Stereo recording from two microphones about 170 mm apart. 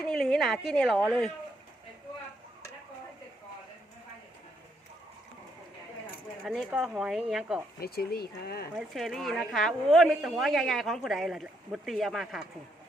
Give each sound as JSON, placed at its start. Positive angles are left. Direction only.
{"t": 0.2, "sound": "a woman's voice", "side_deg": 0}
{"t": 6.4, "sound": "a woman's voice", "side_deg": 5}
{"t": 7.8, "sound": "speech", "side_deg": 65}
{"t": 8.7, "sound": "a woman's voice", "side_deg": 0}